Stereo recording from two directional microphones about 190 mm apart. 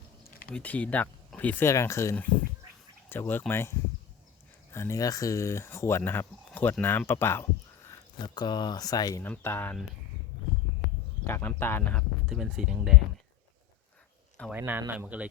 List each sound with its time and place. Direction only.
0.3 s a sound: 50° left (ahead or behind)
0.5 s speech: 5° left (ahead or behind)
8.2 s speech: 20° left (ahead or behind)
11.3 s speech: 10° left (ahead or behind)
12.3 s speech: centre (ahead or behind)
14.5 s speech: 10° right (ahead or behind)